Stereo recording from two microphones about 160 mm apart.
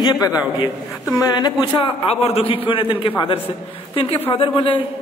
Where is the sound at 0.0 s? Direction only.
25° left (ahead or behind).